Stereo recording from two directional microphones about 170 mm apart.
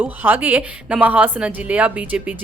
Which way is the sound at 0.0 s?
10° right (ahead or behind).